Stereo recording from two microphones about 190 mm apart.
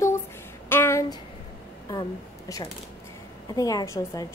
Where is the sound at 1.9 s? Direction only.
20° left (ahead or behind).